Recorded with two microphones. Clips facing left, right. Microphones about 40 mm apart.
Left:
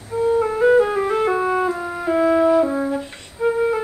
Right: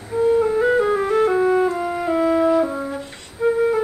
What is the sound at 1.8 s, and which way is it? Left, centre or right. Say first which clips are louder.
Music: right 3 dB; centre.